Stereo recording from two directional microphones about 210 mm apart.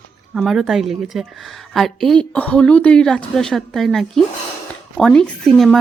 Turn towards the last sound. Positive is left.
turn(degrees=5)  # may be behind; listen again after turning